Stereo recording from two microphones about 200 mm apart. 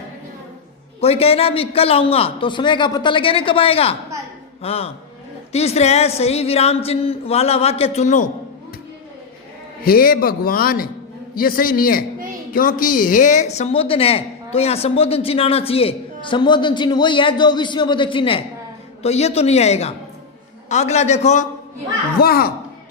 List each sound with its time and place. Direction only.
1.0 s a woman's voice: 30° left (ahead or behind)
9.8 s a man's voice: 45° left (ahead or behind)
22.2 s a man's voice: 50° left (ahead or behind)